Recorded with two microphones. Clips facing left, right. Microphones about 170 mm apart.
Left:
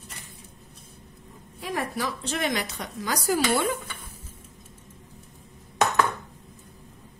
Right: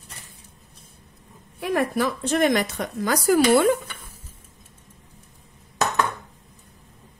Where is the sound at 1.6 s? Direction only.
60° right (ahead or behind).